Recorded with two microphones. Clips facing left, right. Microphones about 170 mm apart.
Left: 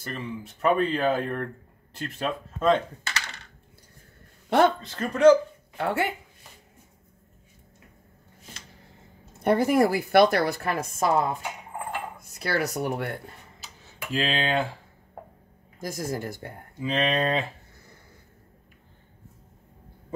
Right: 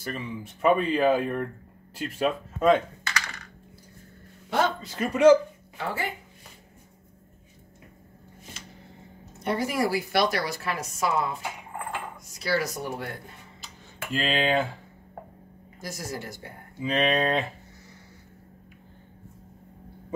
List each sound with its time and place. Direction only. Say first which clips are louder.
0.1 s speech: even; 5° right (ahead or behind)
4.5 s speech: left 5 dB; 60° left (ahead or behind)
4.8 s speech: right 4 dB; 10° right (ahead or behind)
5.8 s speech: left 5 dB; 70° left (ahead or behind)
9.4 s a woman's voice: left 6 dB; 55° left (ahead or behind)
12.3 s a woman's voice: even; 60° left (ahead or behind)
14.2 s speech: right 2 dB; centre (ahead or behind)
15.8 s speech: left 5 dB; 50° left (ahead or behind)
16.8 s speech: right 1 dB; 5° right (ahead or behind)